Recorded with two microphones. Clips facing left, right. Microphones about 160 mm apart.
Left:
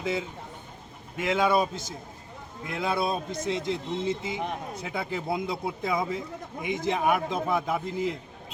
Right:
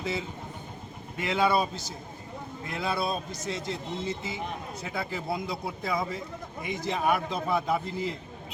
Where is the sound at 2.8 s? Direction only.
15° left (ahead or behind).